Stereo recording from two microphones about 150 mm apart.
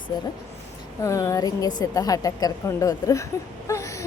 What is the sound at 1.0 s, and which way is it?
Speech, 20° left (ahead or behind).